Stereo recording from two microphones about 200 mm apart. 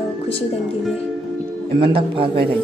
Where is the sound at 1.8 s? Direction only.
25° right (ahead or behind).